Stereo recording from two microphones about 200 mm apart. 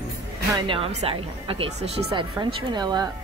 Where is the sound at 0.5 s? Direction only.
25° right (ahead or behind).